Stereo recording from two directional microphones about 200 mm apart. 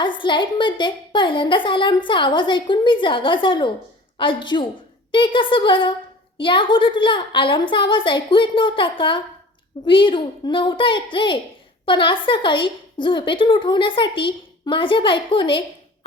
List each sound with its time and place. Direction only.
0.0 s a woman's voice: 25° left (ahead or behind)